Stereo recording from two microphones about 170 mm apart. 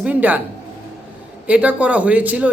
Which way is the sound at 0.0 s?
10° right (ahead or behind).